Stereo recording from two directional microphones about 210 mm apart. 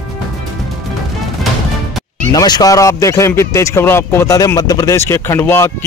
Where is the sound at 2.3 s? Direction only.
20° left (ahead or behind).